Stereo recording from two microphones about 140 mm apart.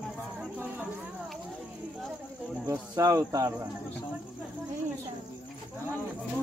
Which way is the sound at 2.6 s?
25° right (ahead or behind).